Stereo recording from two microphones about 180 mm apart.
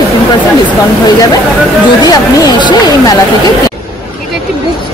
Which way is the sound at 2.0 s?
20° left (ahead or behind).